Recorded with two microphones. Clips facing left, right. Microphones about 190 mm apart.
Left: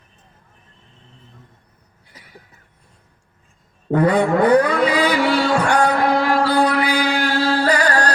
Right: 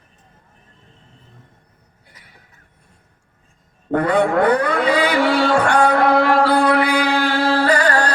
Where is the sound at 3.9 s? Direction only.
60° right (ahead or behind).